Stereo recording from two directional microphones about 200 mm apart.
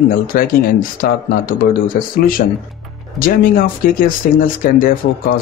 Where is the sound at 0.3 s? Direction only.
45° left (ahead or behind).